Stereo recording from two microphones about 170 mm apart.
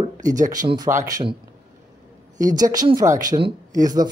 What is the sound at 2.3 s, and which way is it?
Speech, 20° right (ahead or behind).